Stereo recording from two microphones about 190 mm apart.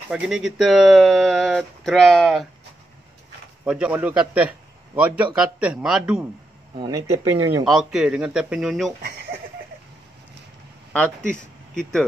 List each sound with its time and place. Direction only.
0.1 s a man's voice: 5° right (ahead or behind)
3.6 s a man's voice: 5° right (ahead or behind)
6.8 s speech: 15° right (ahead or behind)
7.6 s a man's voice: centre (ahead or behind)